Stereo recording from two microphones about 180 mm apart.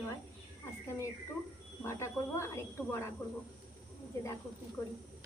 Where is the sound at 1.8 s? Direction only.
15° left (ahead or behind).